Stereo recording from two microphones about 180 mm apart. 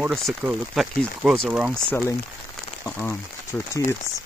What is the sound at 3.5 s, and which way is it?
Speech, 10° left (ahead or behind).